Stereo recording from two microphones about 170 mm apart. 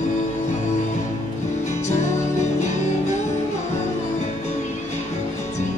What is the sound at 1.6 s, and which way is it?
Music, 40° left (ahead or behind).